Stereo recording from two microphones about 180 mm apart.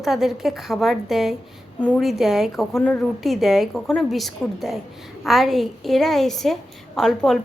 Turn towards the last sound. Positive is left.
turn(degrees=0)  # may be behind; listen again after turning